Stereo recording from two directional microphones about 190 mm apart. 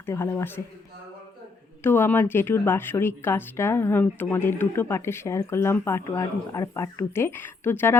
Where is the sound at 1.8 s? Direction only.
10° left (ahead or behind).